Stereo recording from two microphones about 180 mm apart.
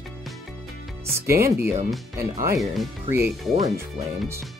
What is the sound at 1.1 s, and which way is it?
Speech, 15° right (ahead or behind).